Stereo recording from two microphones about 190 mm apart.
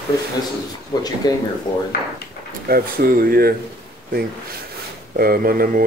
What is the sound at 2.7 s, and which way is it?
Speech, 50° right (ahead or behind).